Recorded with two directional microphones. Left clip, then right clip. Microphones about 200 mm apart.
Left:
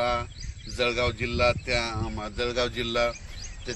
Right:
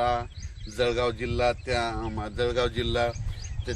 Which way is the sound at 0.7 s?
35° right (ahead or behind).